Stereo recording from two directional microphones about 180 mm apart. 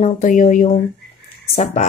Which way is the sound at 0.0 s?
45° left (ahead or behind).